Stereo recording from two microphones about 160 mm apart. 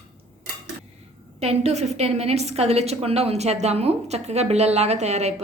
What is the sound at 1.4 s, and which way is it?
A woman's voice, 40° right (ahead or behind).